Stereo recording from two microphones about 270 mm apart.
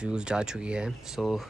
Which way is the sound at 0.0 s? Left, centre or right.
Centre.